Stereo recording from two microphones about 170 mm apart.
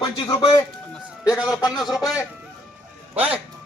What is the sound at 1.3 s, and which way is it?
Speech, 5° right (ahead or behind).